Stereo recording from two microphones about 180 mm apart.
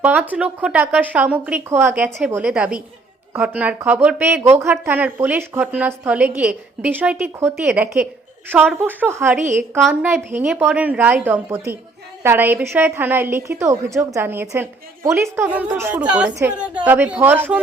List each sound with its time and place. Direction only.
0.0 s a woman's voice: 10° right (ahead or behind)
7.7 s a woman's voice: 5° right (ahead or behind)
9.4 s a woman's voice: 45° right (ahead or behind)
9.9 s a woman's voice: 10° right (ahead or behind)